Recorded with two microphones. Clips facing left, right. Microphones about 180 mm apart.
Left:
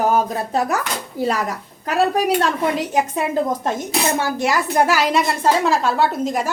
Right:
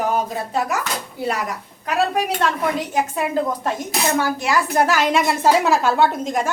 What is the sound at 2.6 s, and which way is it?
Speech, 20° left (ahead or behind).